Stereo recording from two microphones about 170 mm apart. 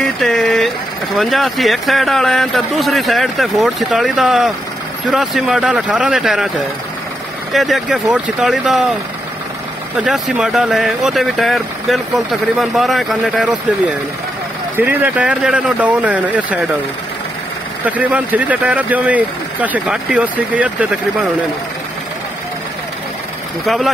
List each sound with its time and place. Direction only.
0.0 s vehicle: centre (ahead or behind)
1.1 s speech: centre (ahead or behind)
7.5 s speech: centre (ahead or behind)
9.9 s speech: centre (ahead or behind)
14.9 s speech: 10° right (ahead or behind)
17.8 s speech: 10° right (ahead or behind)
23.6 s speech: centre (ahead or behind)